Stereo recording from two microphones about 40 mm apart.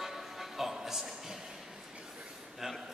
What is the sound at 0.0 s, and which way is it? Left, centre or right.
Music, centre.